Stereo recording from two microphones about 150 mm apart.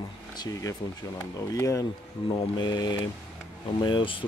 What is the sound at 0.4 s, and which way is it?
Speech, 25° left (ahead or behind).